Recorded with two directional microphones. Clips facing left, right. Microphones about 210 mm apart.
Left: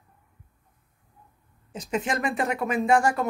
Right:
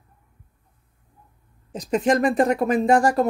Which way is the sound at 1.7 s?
35° right (ahead or behind).